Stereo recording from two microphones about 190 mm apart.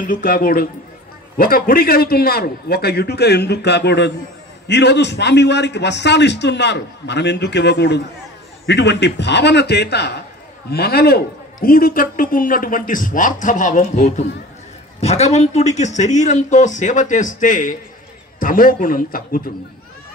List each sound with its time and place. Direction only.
0.0 s a woman's voice: 45° left (ahead or behind)